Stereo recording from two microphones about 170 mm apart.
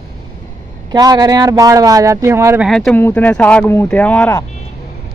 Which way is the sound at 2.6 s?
Centre (ahead or behind).